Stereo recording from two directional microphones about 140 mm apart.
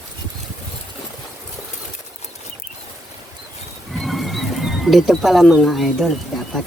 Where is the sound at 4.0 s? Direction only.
Centre (ahead or behind).